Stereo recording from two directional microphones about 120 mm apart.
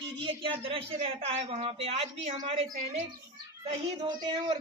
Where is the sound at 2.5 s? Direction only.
55° right (ahead or behind).